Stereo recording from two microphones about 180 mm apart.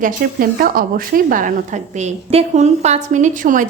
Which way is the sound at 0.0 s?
55° right (ahead or behind).